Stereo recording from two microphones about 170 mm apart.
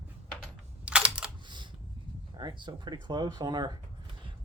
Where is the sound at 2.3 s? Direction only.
25° right (ahead or behind).